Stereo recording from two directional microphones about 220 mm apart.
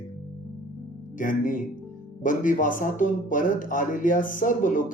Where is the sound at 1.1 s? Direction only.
35° left (ahead or behind).